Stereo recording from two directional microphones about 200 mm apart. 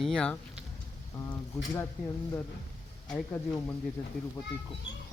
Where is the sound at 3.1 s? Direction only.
10° left (ahead or behind).